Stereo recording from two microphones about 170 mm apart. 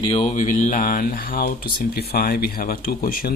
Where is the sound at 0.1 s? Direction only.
35° left (ahead or behind).